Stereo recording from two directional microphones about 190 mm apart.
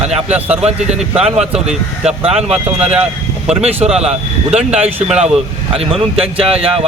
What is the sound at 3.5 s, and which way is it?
Speech, 35° right (ahead or behind).